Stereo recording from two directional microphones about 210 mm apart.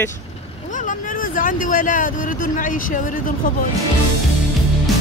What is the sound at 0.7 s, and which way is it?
Speech, 40° left (ahead or behind).